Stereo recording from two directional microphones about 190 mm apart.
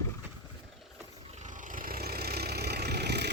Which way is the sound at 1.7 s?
50° right (ahead or behind).